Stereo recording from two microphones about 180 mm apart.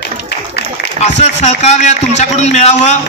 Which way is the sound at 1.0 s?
40° left (ahead or behind).